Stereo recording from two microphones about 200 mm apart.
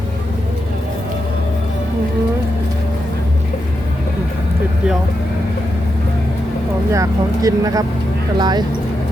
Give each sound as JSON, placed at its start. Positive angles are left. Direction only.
{"t": 6.9, "sound": "speech", "side_deg": -15}